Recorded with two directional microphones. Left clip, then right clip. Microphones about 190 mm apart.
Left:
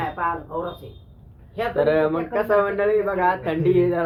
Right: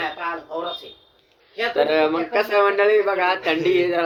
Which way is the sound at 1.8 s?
25° right (ahead or behind).